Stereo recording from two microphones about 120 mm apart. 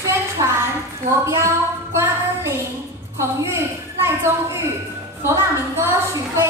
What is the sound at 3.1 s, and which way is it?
Speech, 25° right (ahead or behind).